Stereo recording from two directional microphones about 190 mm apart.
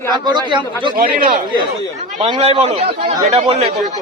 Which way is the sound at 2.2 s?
30° right (ahead or behind).